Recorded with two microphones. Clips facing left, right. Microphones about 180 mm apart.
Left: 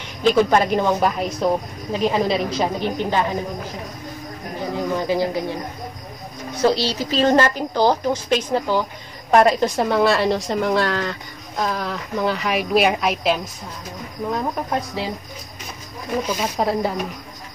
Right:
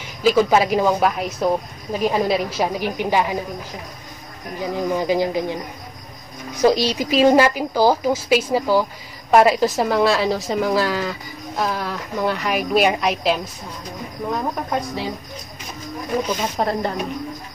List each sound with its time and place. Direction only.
0.2 s a woman's voice: 5° right (ahead or behind)
4.9 s a woman's voice: 15° right (ahead or behind)
6.6 s a woman's voice: 15° right (ahead or behind)
16.3 s a woman's voice: 5° left (ahead or behind)